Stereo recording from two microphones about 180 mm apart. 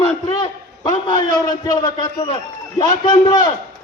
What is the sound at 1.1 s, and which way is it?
A man's voice, 20° left (ahead or behind).